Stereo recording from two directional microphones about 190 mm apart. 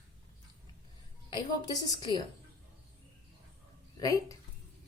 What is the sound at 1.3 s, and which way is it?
Speech, 20° left (ahead or behind).